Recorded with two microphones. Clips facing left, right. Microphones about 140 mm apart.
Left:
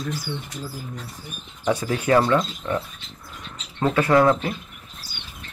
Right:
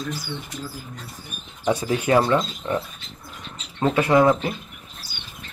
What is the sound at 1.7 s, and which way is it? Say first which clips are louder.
Speech: even; 20° right (ahead or behind).